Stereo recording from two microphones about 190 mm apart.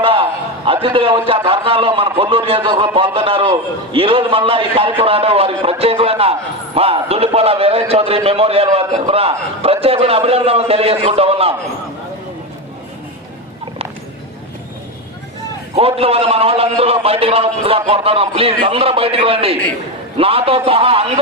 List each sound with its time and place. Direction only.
0.0 s a man's voice: 30° right (ahead or behind)
15.7 s a man's voice: 30° right (ahead or behind)